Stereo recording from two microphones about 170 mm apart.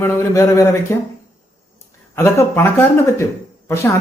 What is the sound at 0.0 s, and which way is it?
Speech, 15° left (ahead or behind).